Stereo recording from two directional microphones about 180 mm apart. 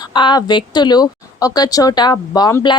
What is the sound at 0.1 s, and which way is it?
A woman's voice, 25° left (ahead or behind).